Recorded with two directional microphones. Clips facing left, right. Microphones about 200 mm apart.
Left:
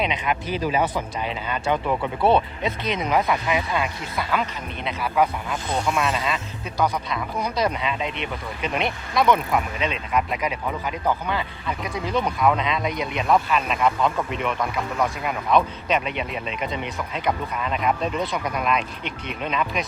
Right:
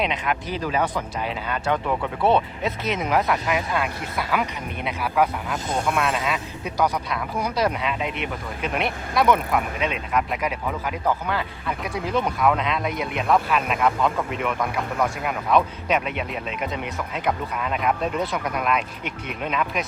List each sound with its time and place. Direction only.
0.0 s a man's voice: centre (ahead or behind)
5.6 s speech: 50° right (ahead or behind)
6.0 s a man's voice: 5° right (ahead or behind)